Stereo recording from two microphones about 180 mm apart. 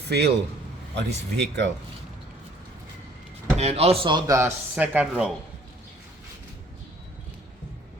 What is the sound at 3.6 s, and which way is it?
Speech, 35° right (ahead or behind).